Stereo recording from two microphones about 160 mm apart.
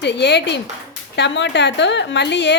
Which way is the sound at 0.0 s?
90° left.